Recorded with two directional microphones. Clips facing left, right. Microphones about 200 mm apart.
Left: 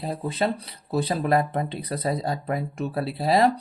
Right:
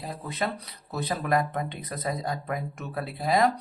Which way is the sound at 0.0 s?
30° left (ahead or behind).